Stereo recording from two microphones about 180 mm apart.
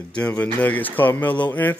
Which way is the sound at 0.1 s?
5° left (ahead or behind).